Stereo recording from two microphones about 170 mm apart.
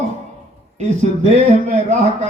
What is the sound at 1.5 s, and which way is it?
Speech, 40° right (ahead or behind).